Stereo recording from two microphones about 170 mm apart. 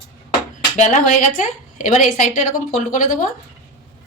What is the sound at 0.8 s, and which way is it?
A woman's voice, 45° left (ahead or behind).